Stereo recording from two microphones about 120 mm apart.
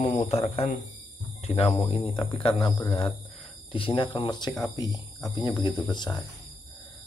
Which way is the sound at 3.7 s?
45° left (ahead or behind).